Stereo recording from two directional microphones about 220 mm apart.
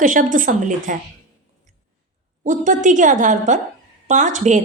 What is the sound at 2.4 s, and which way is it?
A woman's voice, 35° right (ahead or behind).